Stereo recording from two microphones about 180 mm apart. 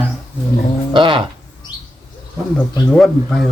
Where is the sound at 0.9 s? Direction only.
25° right (ahead or behind).